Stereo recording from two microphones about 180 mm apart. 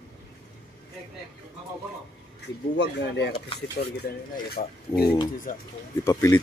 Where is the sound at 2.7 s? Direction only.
75° left (ahead or behind).